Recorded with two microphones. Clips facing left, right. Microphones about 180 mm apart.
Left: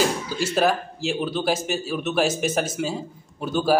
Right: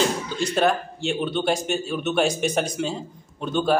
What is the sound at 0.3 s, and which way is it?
A man's voice, 5° left (ahead or behind).